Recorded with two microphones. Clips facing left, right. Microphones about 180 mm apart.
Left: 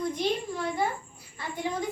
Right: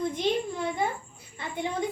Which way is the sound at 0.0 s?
20° right (ahead or behind).